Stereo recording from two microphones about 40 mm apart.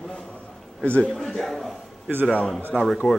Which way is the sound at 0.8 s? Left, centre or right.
Left.